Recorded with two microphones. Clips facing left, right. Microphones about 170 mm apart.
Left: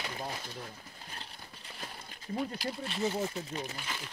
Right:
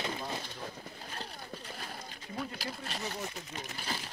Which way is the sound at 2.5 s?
40° right (ahead or behind).